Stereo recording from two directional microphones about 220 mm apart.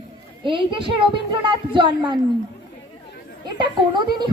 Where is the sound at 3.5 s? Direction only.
20° right (ahead or behind).